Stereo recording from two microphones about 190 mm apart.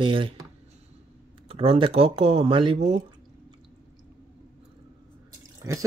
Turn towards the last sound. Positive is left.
turn(degrees=-15)  # may be behind; listen again after turning